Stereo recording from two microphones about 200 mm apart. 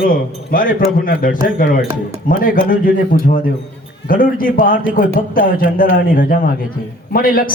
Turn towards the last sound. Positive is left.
turn(degrees=45)  # may be behind; listen again after turning